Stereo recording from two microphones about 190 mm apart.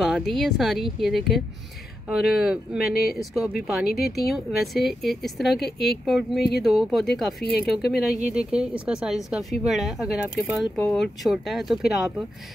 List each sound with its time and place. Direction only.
0.0 s speech: centre (ahead or behind)
2.9 s speech: 55° left (ahead or behind)
3.2 s speech: centre (ahead or behind)